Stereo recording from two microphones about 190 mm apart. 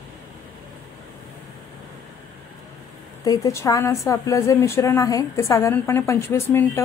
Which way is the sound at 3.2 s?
20° left (ahead or behind).